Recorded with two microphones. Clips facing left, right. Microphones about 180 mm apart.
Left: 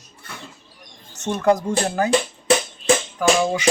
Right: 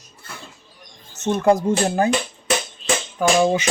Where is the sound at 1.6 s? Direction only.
25° right (ahead or behind).